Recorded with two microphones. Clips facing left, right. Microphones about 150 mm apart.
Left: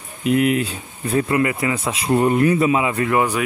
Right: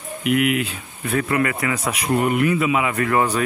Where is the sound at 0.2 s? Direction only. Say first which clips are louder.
Left 2 dB; 35° left (ahead or behind).